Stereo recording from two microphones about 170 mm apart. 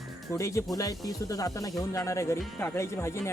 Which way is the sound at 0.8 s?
20° left (ahead or behind).